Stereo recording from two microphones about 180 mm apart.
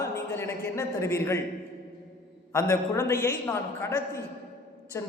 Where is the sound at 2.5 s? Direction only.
15° left (ahead or behind).